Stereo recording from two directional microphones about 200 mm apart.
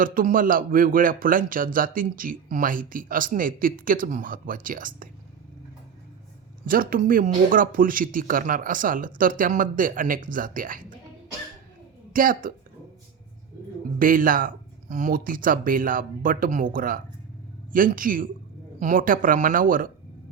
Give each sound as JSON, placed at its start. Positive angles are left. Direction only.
{"t": 0.0, "sound": "speech", "side_deg": -45}
{"t": 6.7, "sound": "speech", "side_deg": -45}
{"t": 12.1, "sound": "speech", "side_deg": -45}
{"t": 14.0, "sound": "speech", "side_deg": -45}